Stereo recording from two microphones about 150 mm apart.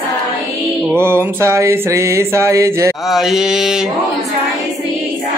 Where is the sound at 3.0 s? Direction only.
5° right (ahead or behind).